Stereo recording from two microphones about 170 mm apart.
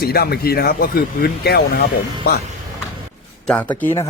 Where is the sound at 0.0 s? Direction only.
65° left (ahead or behind).